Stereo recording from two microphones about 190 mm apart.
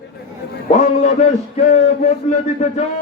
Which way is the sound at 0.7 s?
40° left (ahead or behind).